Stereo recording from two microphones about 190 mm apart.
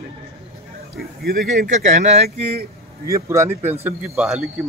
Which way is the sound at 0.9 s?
55° right (ahead or behind).